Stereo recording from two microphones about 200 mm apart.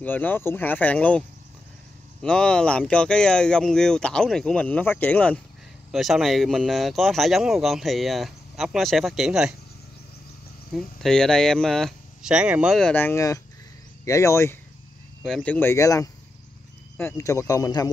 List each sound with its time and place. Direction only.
0.0 s speech: 10° left (ahead or behind)
2.2 s speech: 5° left (ahead or behind)
10.7 s speech: centre (ahead or behind); by 17.8 s 20° left (ahead or behind)